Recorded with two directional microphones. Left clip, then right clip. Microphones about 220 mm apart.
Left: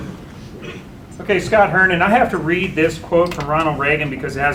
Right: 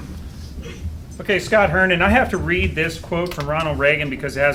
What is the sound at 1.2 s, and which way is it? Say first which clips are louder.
Speech: left 2 dB; 35° right (ahead or behind).